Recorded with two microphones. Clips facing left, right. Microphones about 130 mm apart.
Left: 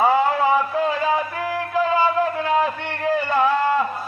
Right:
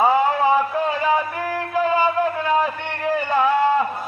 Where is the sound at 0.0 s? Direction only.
20° right (ahead or behind).